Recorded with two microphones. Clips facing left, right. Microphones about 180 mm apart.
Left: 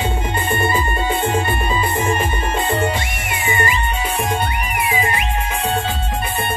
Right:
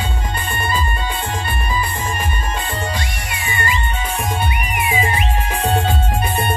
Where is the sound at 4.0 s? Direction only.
5° left (ahead or behind).